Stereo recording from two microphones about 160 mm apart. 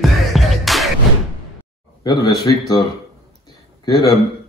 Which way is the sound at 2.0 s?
25° left (ahead or behind).